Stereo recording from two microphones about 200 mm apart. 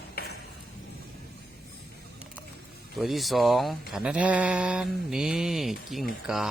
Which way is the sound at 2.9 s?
Centre (ahead or behind).